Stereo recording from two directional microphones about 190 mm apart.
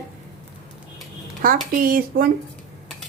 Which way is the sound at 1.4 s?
45° right (ahead or behind).